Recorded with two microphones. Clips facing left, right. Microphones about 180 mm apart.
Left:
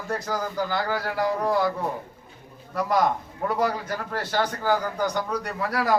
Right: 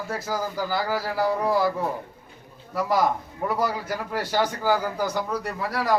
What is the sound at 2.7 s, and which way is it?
A man's voice, 5° right (ahead or behind).